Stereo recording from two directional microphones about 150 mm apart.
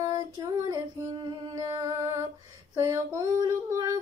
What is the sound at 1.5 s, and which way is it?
Speech, 20° right (ahead or behind).